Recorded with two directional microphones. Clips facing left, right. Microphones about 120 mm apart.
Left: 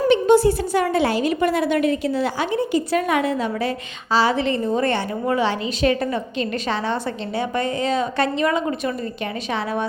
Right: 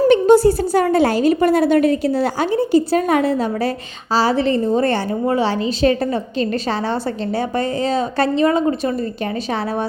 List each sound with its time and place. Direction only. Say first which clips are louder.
0.1 s a woman's voice: right 2 dB; 40° right (ahead or behind)